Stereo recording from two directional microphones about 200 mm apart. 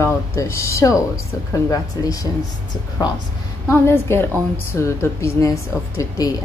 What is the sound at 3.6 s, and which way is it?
A woman's voice, 10° left (ahead or behind).